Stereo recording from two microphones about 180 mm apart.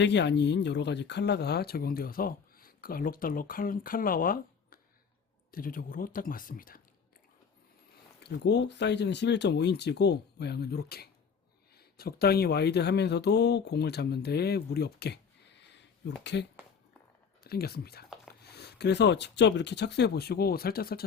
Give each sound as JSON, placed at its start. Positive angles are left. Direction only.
{"t": 0.0, "sound": "speech", "side_deg": 75}
{"t": 8.2, "sound": "speech", "side_deg": 70}
{"t": 17.4, "sound": "speech", "side_deg": 60}